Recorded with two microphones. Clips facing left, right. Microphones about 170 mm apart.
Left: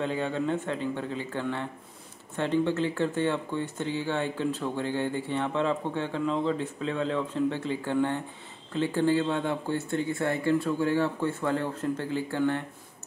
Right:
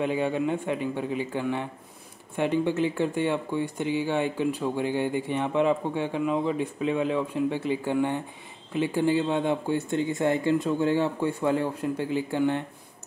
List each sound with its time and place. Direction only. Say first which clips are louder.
0.0 s speech: right 3 dB; 15° right (ahead or behind)